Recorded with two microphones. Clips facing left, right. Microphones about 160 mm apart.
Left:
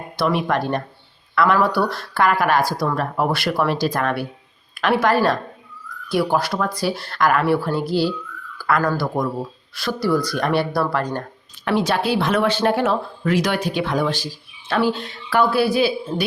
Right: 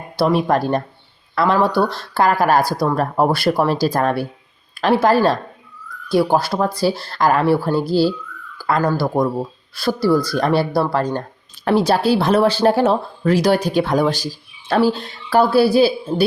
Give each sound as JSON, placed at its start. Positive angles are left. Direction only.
{"t": 0.2, "sound": "speech", "side_deg": -35}
{"t": 8.5, "sound": "a sound", "side_deg": -25}
{"t": 9.0, "sound": "speech", "side_deg": -30}